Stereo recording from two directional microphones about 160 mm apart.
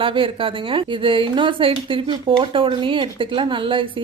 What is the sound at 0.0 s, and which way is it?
A woman's voice, 30° right (ahead or behind).